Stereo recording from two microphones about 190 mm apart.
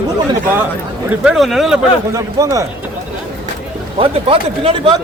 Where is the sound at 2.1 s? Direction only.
20° right (ahead or behind).